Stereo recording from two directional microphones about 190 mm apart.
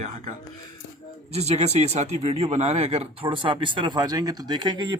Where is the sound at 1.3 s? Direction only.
35° right (ahead or behind).